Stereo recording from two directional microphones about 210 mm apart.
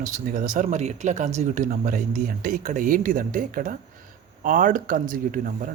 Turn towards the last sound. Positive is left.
turn(degrees=-40)  # may be behind; listen again after turning